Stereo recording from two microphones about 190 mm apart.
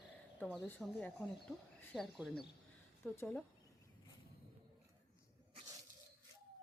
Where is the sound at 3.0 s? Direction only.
10° left (ahead or behind).